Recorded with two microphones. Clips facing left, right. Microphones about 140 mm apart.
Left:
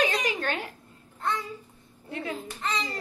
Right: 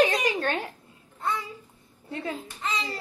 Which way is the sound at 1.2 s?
10° right (ahead or behind).